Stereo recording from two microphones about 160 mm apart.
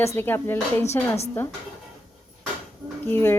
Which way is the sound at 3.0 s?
15° left (ahead or behind).